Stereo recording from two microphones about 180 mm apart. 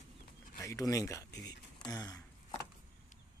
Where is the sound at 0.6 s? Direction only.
20° left (ahead or behind).